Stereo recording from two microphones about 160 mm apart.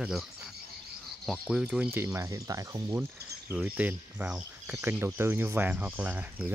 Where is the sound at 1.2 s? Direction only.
Centre (ahead or behind).